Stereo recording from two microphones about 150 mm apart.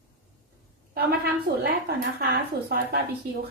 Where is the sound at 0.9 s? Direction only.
90° right.